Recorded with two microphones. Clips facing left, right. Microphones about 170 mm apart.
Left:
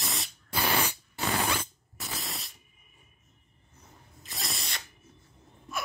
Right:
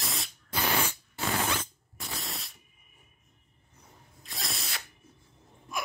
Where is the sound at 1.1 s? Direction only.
15° left (ahead or behind).